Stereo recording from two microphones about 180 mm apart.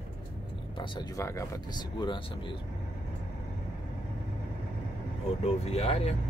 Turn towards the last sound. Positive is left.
turn(degrees=35)  # may be behind; listen again after turning